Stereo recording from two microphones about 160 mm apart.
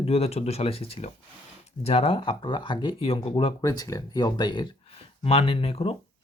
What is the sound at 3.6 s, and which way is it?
Speech, 25° left (ahead or behind).